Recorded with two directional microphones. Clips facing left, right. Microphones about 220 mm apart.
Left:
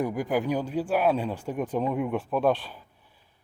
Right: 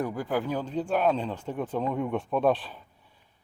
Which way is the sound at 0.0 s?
15° left (ahead or behind).